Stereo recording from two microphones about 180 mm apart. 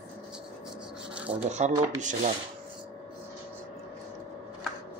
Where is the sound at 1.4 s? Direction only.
40° right (ahead or behind).